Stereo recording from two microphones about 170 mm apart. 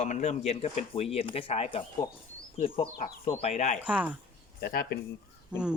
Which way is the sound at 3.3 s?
40° left (ahead or behind).